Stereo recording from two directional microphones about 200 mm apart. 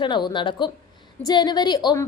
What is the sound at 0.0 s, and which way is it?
A woman's voice, 25° left (ahead or behind).